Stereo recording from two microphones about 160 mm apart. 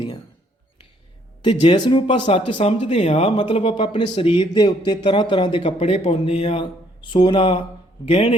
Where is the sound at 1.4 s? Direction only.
30° left (ahead or behind).